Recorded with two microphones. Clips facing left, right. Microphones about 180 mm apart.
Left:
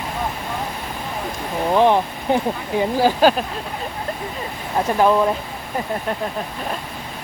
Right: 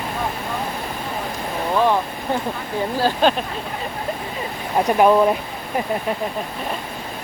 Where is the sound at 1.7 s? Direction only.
20° left (ahead or behind).